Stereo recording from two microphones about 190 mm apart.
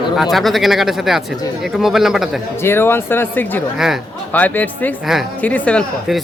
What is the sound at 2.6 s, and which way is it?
Speech, 10° left (ahead or behind).